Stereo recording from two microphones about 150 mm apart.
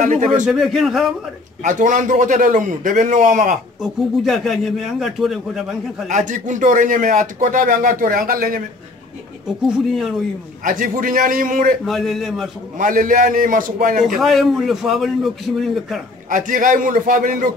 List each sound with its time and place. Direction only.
0.0 s speech: 55° right (ahead or behind)
0.5 s speech: centre (ahead or behind)
1.6 s speech: 60° right (ahead or behind)
3.8 s speech: centre (ahead or behind)
6.0 s speech: 55° right (ahead or behind)
9.7 s speech: 5° right (ahead or behind)
10.6 s speech: 65° right (ahead or behind)
11.8 s speech: centre (ahead or behind)
12.7 s speech: 65° right (ahead or behind)
14.0 s speech: centre (ahead or behind)
16.3 s speech: 60° right (ahead or behind)